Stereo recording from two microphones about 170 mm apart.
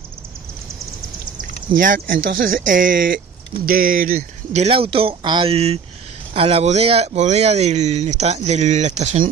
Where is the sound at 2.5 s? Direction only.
50° right (ahead or behind).